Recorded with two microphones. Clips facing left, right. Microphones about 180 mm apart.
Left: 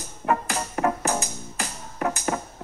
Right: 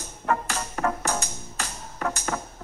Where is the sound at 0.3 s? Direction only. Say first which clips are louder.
Left 2 dB; 15° left (ahead or behind).